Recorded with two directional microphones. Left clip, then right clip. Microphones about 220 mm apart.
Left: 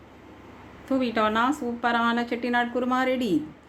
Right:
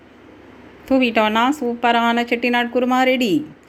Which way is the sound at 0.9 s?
20° right (ahead or behind).